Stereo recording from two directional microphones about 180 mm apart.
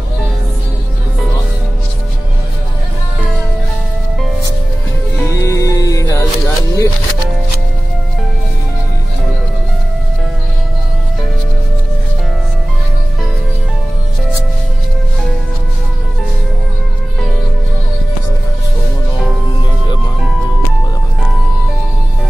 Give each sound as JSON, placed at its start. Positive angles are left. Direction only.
{"t": 5.2, "sound": "music", "side_deg": 15}